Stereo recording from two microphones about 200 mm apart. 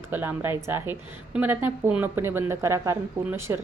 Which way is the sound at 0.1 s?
10° right (ahead or behind).